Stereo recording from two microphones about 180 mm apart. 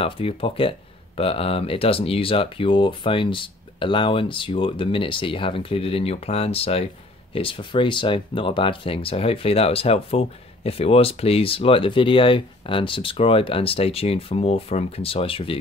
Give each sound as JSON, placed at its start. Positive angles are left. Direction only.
{"t": 0.0, "sound": "speech", "side_deg": 30}